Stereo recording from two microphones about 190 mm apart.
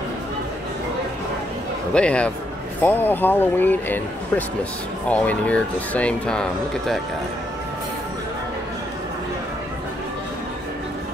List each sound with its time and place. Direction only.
2.0 s speech: 5° left (ahead or behind)